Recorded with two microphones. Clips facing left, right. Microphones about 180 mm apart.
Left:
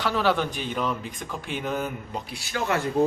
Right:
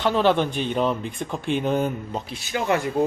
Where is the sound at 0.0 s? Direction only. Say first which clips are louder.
Right 4 dB; 20° right (ahead or behind).